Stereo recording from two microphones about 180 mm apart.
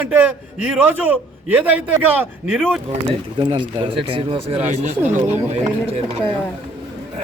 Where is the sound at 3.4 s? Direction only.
25° right (ahead or behind).